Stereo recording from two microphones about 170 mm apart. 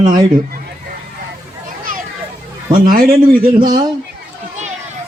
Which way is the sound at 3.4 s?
55° right (ahead or behind).